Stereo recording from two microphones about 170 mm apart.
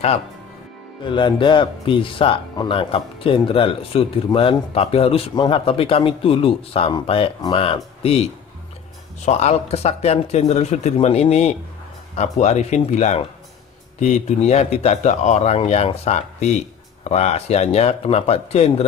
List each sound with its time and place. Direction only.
1.0 s speech: 30° left (ahead or behind)